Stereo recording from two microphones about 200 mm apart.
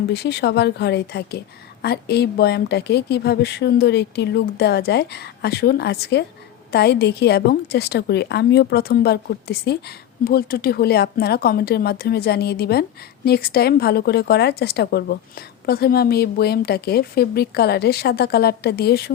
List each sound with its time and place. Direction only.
0.1 s a woman's voice: 55° left (ahead or behind)